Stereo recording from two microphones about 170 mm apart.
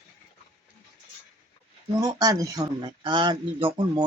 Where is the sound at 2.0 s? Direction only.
20° right (ahead or behind).